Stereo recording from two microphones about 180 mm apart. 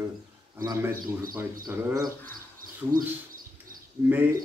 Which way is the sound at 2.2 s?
50° right (ahead or behind).